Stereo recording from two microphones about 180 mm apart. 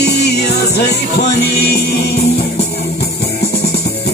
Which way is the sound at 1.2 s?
65° left (ahead or behind).